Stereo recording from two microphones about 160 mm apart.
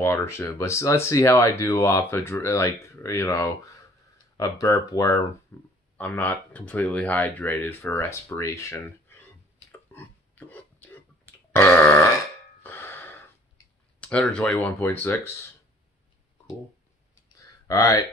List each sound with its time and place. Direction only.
0.0 s speech: 15° left (ahead or behind)
9.7 s a sound: 10° left (ahead or behind)
12.6 s gasp: 15° left (ahead or behind)
14.0 s speech: 5° left (ahead or behind)
17.6 s speech: 20° left (ahead or behind)